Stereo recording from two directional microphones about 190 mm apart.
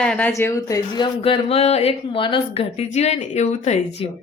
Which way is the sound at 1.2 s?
30° left (ahead or behind).